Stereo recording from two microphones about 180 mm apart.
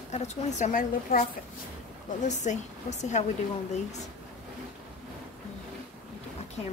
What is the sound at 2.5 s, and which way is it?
Speech, 40° left (ahead or behind).